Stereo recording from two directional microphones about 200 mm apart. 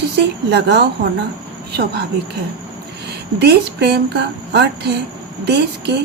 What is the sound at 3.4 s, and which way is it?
A woman's voice, 55° right (ahead or behind).